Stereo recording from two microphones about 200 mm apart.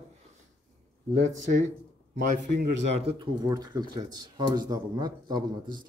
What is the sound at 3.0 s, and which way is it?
Speech, 20° right (ahead or behind).